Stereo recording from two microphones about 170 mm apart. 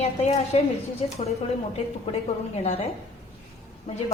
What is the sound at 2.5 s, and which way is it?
A woman's voice, 35° left (ahead or behind).